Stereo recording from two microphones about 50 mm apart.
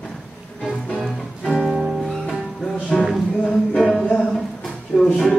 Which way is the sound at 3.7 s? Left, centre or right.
Centre.